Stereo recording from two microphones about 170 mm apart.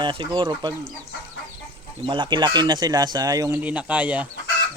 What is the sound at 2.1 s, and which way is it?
Speech, 25° right (ahead or behind).